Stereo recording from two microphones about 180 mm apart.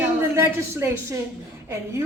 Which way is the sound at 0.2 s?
15° right (ahead or behind).